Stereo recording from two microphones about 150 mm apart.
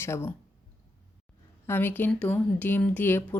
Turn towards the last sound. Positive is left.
turn(degrees=15)  # may be behind; listen again after turning